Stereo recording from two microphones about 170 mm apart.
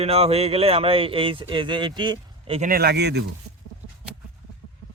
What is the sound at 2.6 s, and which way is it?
Speech, 65° right (ahead or behind).